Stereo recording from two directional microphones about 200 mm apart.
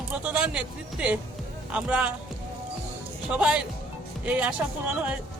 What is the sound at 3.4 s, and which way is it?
Speech, 5° right (ahead or behind).